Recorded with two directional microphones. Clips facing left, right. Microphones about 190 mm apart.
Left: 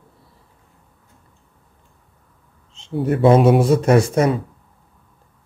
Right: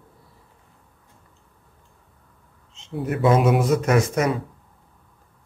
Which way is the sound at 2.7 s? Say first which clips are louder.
Left 6 dB; 30° left (ahead or behind).